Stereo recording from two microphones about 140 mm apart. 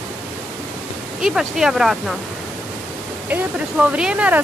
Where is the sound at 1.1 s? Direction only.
5° right (ahead or behind).